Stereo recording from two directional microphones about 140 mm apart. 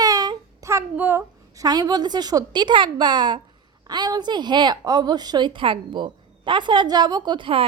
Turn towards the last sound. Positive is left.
turn(degrees=-40)  # may be behind; listen again after turning